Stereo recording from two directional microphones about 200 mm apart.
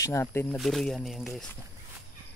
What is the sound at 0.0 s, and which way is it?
Speech, 10° left (ahead or behind).